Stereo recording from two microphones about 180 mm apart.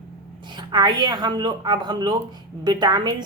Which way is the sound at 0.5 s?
25° right (ahead or behind).